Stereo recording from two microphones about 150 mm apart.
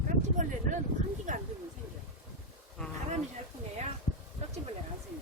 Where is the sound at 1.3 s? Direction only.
55° right (ahead or behind).